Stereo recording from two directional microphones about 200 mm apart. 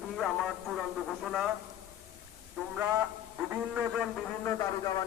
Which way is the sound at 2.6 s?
Centre (ahead or behind).